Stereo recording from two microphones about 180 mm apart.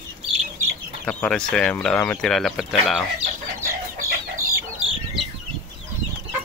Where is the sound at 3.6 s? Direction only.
15° right (ahead or behind).